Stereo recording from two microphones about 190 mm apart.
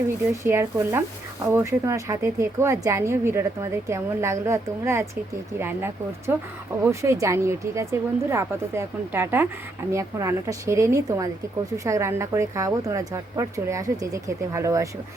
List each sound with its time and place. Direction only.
0.4 s speech: 15° right (ahead or behind)